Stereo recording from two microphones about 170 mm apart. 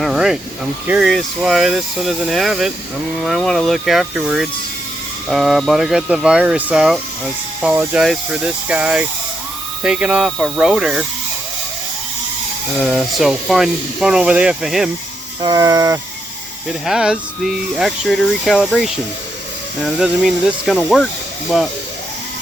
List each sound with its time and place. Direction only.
0.0 s a sound: centre (ahead or behind)
0.9 s speech: centre (ahead or behind)
12.8 s speech: centre (ahead or behind)
15.4 s speech: 25° right (ahead or behind)
16.8 s speech: 5° right (ahead or behind)